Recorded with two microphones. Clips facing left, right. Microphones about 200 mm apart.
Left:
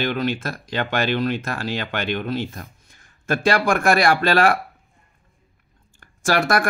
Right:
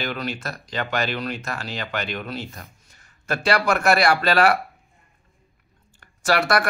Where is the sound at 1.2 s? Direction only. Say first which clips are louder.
Left 6 dB; 50° left (ahead or behind).